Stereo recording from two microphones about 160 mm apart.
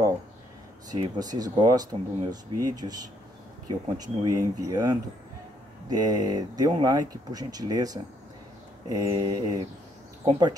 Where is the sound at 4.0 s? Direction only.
25° right (ahead or behind).